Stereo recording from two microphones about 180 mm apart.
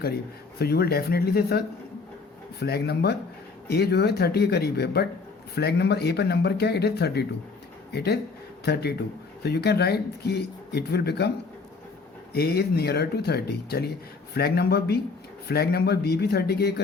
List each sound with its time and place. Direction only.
0.6 s speech: 60° left (ahead or behind)
12.3 s speech: 60° left (ahead or behind)